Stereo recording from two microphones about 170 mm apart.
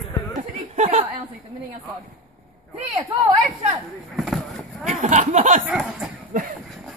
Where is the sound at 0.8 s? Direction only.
45° right (ahead or behind).